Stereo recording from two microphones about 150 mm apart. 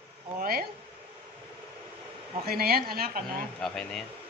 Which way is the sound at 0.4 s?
85° right.